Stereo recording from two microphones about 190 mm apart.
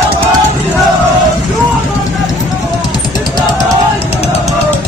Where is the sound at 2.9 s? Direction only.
20° left (ahead or behind).